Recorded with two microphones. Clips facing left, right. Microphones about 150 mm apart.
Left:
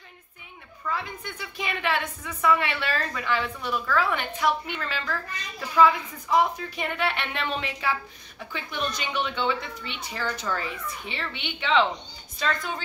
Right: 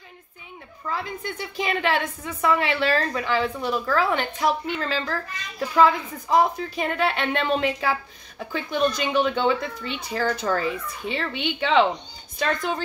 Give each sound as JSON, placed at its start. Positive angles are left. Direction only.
{"t": 0.8, "sound": "a woman's voice", "side_deg": -30}
{"t": 12.4, "sound": "a woman's voice", "side_deg": -55}